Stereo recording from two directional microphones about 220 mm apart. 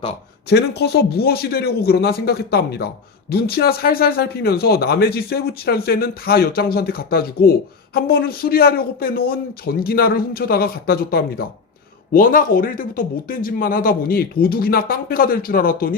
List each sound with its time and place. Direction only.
0.5 s speech: 50° left (ahead or behind)